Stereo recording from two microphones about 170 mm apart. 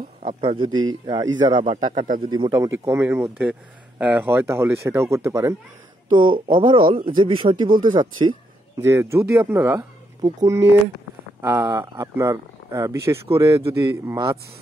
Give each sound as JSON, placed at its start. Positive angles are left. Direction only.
{"t": 0.4, "sound": "speech", "side_deg": -30}
{"t": 2.0, "sound": "speech", "side_deg": -50}
{"t": 2.2, "sound": "speech", "side_deg": -25}
{"t": 6.0, "sound": "speech", "side_deg": -30}